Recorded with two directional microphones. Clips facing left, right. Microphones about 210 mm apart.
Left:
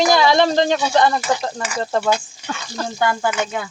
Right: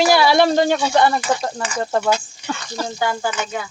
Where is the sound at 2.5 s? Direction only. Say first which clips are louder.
Right 2 dB; 5° right (ahead or behind).